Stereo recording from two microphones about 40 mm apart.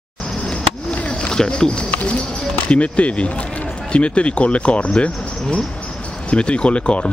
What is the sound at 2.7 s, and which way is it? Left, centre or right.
Speech, left.